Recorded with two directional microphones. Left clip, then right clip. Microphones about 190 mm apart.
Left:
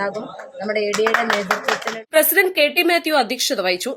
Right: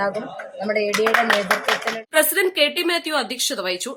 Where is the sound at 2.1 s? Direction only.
15° left (ahead or behind).